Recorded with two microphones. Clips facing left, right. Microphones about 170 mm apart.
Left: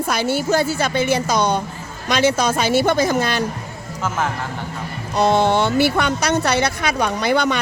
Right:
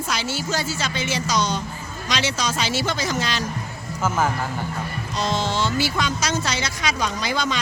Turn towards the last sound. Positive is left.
turn(degrees=60)  # may be behind; listen again after turning